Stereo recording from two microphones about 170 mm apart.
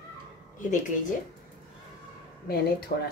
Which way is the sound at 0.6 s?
50° left (ahead or behind).